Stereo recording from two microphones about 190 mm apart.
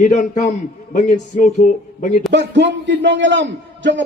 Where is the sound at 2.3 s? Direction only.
70° right (ahead or behind).